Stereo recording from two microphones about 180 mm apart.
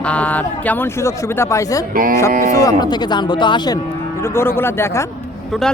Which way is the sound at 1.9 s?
50° right (ahead or behind).